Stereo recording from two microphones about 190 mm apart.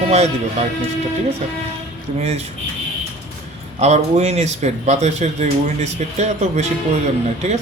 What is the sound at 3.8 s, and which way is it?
Speech, 35° right (ahead or behind).